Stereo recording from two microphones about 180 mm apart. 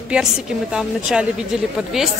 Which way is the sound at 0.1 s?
5° right (ahead or behind).